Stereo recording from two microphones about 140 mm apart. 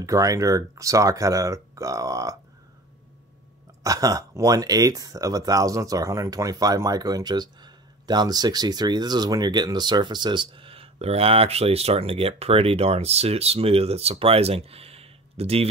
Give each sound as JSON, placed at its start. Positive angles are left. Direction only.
{"t": 0.0, "sound": "speech", "side_deg": -25}
{"t": 3.8, "sound": "speech", "side_deg": -25}